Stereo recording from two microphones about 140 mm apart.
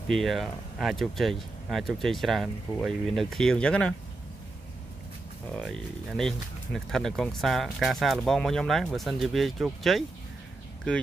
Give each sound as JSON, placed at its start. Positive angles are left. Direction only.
{"t": 0.1, "sound": "speech", "side_deg": 0}
{"t": 5.5, "sound": "speech", "side_deg": 0}